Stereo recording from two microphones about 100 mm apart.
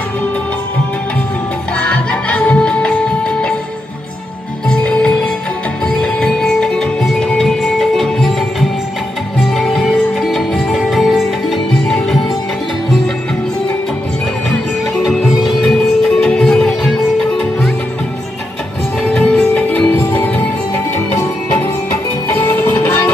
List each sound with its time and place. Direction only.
1.8 s music: 10° left (ahead or behind)
4.6 s music: 10° left (ahead or behind)
15.0 s music: centre (ahead or behind)
19.1 s music: 10° left (ahead or behind)